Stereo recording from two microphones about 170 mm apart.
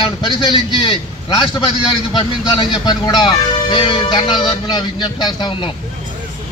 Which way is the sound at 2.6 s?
25° left (ahead or behind).